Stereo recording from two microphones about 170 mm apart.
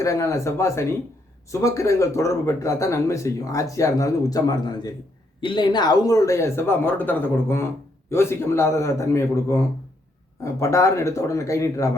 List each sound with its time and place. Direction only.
0.0 s speech: 20° left (ahead or behind)